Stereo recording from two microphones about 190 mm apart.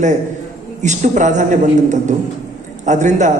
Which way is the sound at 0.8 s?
40° right (ahead or behind).